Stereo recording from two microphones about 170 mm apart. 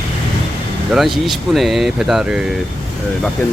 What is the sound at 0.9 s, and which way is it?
Speech, centre (ahead or behind).